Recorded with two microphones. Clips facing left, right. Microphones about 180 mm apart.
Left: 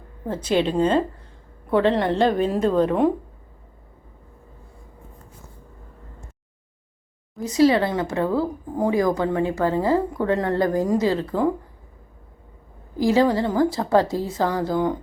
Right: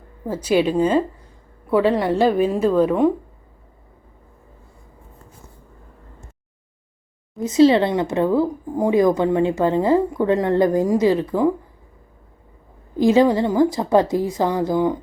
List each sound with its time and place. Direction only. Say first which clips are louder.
0.4 s a woman's voice: right 2 dB; 10° right (ahead or behind)
7.4 s speech: right 4 dB; 25° right (ahead or behind)
13.0 s a woman's voice: right 3 dB; 20° right (ahead or behind)